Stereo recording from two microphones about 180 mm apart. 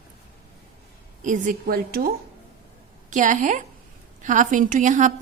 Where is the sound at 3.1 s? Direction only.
45° right (ahead or behind).